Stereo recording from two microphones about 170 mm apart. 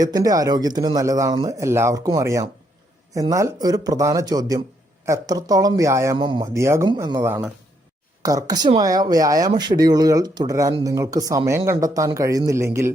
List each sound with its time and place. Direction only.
0.0 s speech: 20° right (ahead or behind)
6.1 s speech: 25° right (ahead or behind)